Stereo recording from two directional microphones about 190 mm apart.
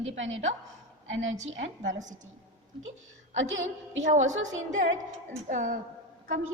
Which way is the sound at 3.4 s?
75° right (ahead or behind).